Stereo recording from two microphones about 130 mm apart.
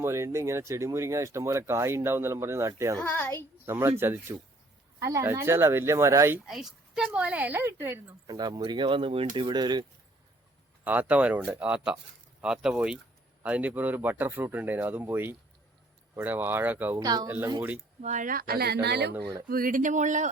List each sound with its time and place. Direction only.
0.0 s speech: 20° right (ahead or behind)
3.0 s a child's voice: 15° left (ahead or behind)
3.7 s speech: 20° right (ahead or behind)
6.4 s speech: 5° right (ahead or behind); by 8.0 s 20° right (ahead or behind)
8.3 s speech: 30° right (ahead or behind)
10.8 s speech: 10° right (ahead or behind)
17.0 s speech: 30° right (ahead or behind)
17.2 s speech: 15° right (ahead or behind)
18.0 s speech: 80° right
19.1 s speech: 25° right (ahead or behind)
19.6 s speech: 85° right